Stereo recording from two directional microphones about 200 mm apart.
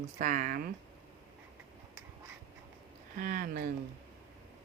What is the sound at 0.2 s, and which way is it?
Speech, 40° right (ahead or behind).